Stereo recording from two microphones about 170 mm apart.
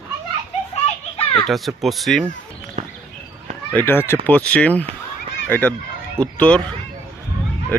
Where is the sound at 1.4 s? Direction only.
Centre (ahead or behind).